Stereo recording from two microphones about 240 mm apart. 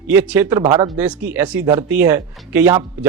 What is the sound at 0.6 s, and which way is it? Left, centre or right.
Speech, right.